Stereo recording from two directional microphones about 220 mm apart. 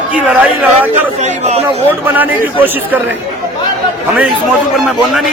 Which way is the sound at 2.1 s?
10° right (ahead or behind).